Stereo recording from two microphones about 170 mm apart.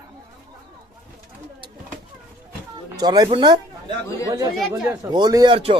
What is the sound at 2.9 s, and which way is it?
Speech, 25° right (ahead or behind).